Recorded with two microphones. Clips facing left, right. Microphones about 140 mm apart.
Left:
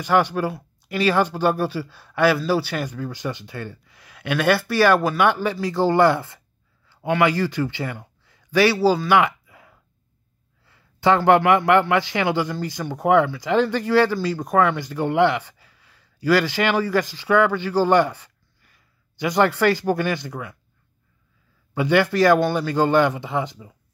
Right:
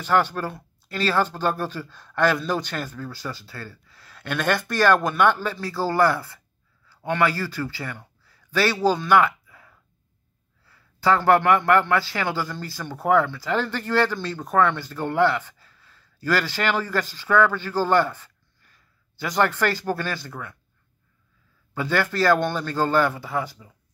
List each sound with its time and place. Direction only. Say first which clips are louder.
0.0 s a man's voice: left 3 dB; 15° left (ahead or behind)
21.7 s speech: left 5 dB; 15° left (ahead or behind)